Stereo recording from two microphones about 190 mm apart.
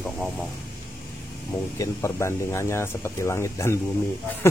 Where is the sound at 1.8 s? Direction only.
15° left (ahead or behind).